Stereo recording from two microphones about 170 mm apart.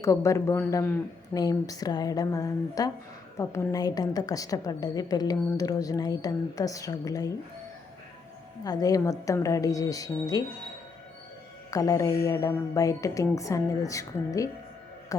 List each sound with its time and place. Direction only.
0.0 s a woman's voice: 15° left (ahead or behind)
8.6 s a woman's voice: 20° left (ahead or behind)
11.7 s a woman's voice: 20° left (ahead or behind)